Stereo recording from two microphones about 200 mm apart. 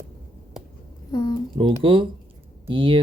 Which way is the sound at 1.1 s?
15° left (ahead or behind).